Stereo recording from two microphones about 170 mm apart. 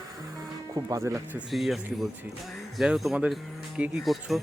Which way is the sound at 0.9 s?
15° right (ahead or behind).